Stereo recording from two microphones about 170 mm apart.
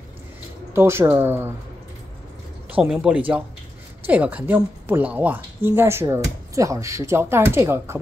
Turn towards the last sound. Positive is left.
turn(degrees=-15)  # may be behind; listen again after turning